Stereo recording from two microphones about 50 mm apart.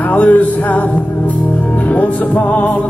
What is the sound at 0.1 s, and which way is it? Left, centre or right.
Music, left.